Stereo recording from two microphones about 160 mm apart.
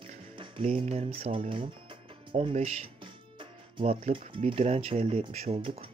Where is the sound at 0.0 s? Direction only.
30° right (ahead or behind).